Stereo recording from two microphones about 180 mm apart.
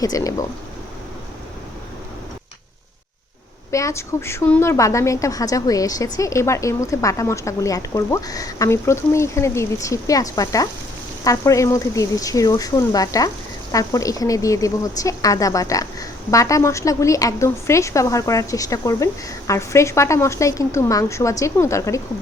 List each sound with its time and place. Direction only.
0.0 s speech: 20° left (ahead or behind)
3.7 s speech: 15° left (ahead or behind)